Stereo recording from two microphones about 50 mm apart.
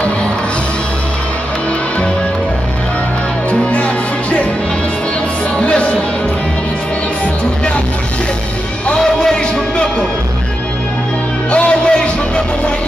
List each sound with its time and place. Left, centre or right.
3.4 s music: left
5.6 s music: left
9.0 s music: centre
11.5 s music: left